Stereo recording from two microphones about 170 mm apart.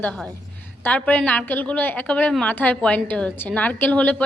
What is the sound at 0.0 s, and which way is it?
A woman's voice, 5° left (ahead or behind).